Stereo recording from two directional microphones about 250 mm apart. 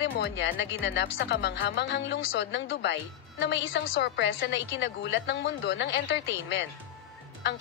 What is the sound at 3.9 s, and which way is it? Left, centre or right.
A woman's voice, left.